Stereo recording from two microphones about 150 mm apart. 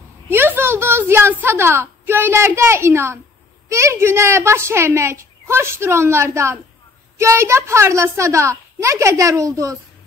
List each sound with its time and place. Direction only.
0.3 s a child's voice: 15° right (ahead or behind)